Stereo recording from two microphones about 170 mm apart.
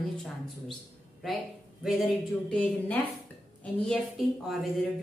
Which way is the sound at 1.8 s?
Centre (ahead or behind).